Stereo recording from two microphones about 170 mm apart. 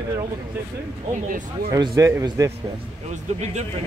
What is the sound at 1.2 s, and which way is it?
Speech, 55° right (ahead or behind).